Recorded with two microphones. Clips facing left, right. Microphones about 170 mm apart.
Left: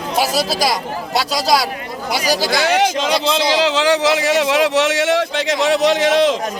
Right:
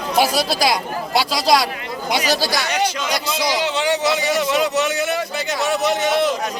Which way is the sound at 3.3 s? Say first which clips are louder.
Left 5 dB; 90° left.